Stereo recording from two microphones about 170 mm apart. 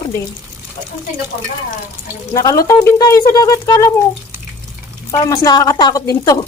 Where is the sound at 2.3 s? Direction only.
20° left (ahead or behind).